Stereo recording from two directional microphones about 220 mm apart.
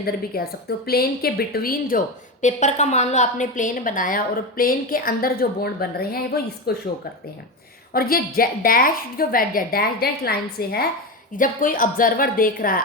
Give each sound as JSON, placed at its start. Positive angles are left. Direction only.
{"t": 0.0, "sound": "a woman's voice", "side_deg": 45}
{"t": 7.9, "sound": "a woman's voice", "side_deg": 40}